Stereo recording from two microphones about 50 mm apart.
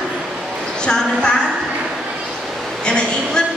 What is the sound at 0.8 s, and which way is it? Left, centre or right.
Speech, centre.